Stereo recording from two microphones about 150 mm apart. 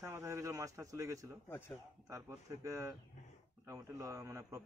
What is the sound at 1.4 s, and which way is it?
Speech, 15° left (ahead or behind).